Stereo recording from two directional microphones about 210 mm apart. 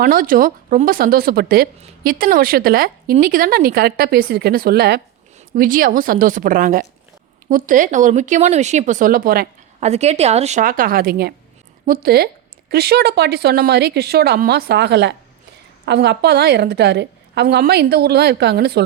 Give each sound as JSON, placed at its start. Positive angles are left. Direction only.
{"t": 0.0, "sound": "speech", "side_deg": -40}
{"t": 9.9, "sound": "speech", "side_deg": -30}